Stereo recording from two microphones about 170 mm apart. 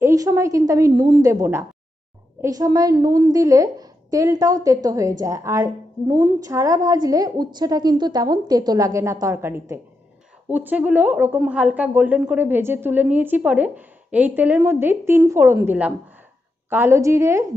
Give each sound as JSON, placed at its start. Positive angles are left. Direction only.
{"t": 0.0, "sound": "a woman's voice", "side_deg": -20}